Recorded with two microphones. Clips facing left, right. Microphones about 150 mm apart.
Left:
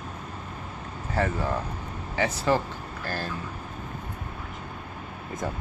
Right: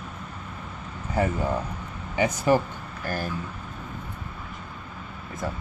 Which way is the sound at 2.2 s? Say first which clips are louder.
Right 3 dB; 15° right (ahead or behind).